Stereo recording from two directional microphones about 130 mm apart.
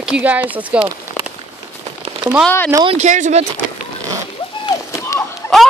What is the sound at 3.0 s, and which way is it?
Speech, 65° right (ahead or behind).